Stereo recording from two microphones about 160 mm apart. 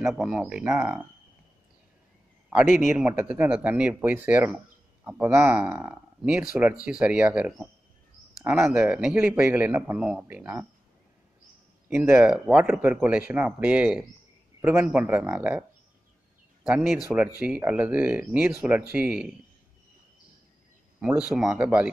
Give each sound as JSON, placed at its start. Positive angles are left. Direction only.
{"t": 0.0, "sound": "speech", "side_deg": 0}
{"t": 3.1, "sound": "speech", "side_deg": -10}
{"t": 11.9, "sound": "a man's voice", "side_deg": -15}
{"t": 16.6, "sound": "speech", "side_deg": -5}
{"t": 21.2, "sound": "speech", "side_deg": 0}